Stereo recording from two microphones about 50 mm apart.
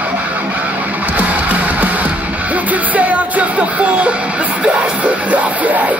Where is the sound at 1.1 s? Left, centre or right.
Right.